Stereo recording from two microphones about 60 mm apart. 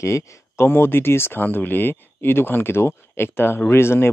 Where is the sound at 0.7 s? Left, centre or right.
Left.